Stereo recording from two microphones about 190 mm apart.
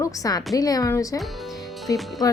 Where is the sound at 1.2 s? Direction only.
Centre (ahead or behind).